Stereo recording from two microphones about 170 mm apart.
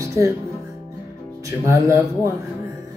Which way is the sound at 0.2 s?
15° right (ahead or behind).